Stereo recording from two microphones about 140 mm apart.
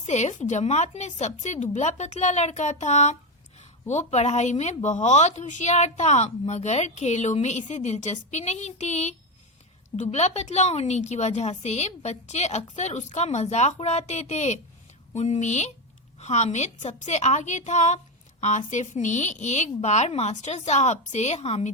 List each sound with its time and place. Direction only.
0.0 s a woman's voice: 55° left (ahead or behind)